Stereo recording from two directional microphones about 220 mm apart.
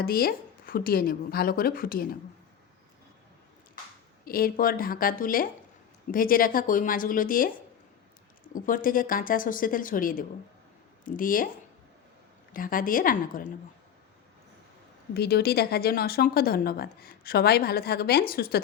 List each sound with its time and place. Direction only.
0.0 s speech: 45° left (ahead or behind)
4.3 s speech: 40° left (ahead or behind)
8.5 s speech: 40° left (ahead or behind)
12.5 s speech: 40° left (ahead or behind)
15.1 s speech: 45° left (ahead or behind)